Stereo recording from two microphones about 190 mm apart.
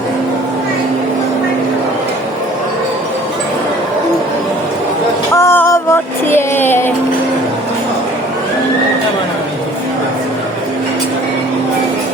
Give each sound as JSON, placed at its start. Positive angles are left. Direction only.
{"t": 5.3, "sound": "music", "side_deg": 15}